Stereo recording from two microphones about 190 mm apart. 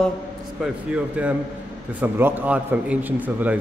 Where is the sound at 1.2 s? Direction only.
5° right (ahead or behind).